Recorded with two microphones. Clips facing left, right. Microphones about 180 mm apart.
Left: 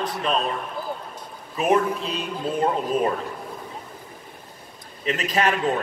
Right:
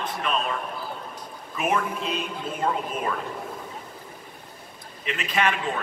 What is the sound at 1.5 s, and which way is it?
A man's voice, 35° left (ahead or behind).